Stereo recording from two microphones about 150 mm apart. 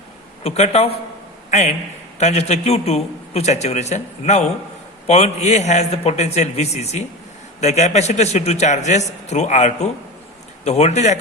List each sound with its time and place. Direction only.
0.4 s a man's voice: 45° left (ahead or behind)